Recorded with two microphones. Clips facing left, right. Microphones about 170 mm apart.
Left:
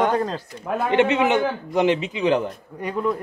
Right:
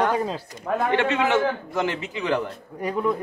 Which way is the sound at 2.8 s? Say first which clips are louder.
Even; 5° right (ahead or behind).